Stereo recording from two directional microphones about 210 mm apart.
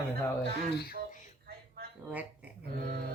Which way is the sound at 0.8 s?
45° left (ahead or behind).